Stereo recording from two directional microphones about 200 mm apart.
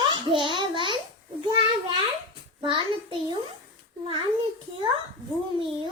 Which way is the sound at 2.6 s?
25° right (ahead or behind).